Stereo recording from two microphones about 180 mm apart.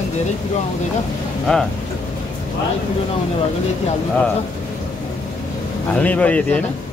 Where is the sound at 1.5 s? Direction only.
5° left (ahead or behind).